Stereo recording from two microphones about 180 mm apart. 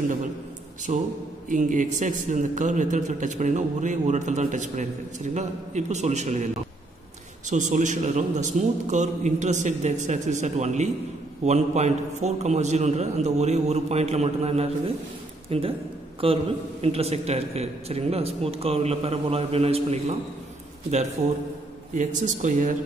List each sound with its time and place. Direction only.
0.9 s a man's voice: 40° right (ahead or behind)
7.4 s a man's voice: 45° right (ahead or behind)
21.9 s a man's voice: 45° right (ahead or behind)